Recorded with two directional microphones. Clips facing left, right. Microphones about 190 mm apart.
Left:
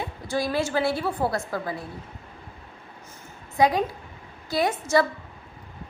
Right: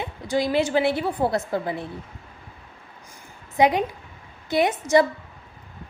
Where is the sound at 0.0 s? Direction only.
20° right (ahead or behind).